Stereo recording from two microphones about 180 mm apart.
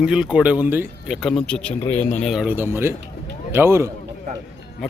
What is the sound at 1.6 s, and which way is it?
Speech, 40° left (ahead or behind).